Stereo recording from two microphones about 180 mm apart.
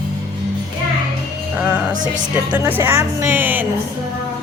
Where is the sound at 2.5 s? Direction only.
10° right (ahead or behind).